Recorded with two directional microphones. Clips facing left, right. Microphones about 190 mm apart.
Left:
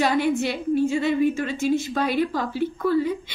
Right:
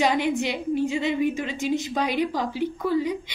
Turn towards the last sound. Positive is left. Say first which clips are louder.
# left 2 dB
turn(degrees=-15)  # may be behind; listen again after turning